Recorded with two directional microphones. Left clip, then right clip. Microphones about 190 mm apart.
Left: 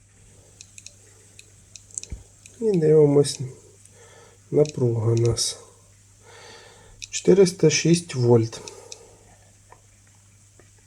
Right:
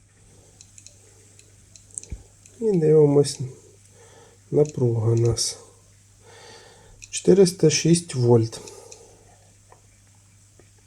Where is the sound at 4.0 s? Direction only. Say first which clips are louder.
Left 1 dB; 15° right (ahead or behind).